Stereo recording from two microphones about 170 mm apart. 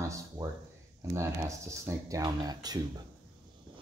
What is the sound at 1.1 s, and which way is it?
Speech, 15° right (ahead or behind).